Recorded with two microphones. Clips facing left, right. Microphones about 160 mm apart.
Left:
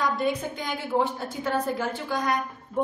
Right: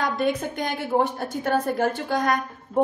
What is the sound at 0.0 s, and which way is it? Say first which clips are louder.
A woman's voice: right 2 dB; 60° right (ahead or behind).